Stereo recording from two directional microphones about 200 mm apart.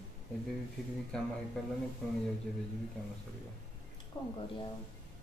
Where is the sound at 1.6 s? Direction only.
5° left (ahead or behind).